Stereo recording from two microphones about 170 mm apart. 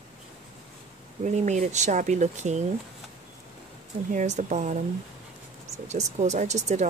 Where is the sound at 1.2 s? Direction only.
45° right (ahead or behind).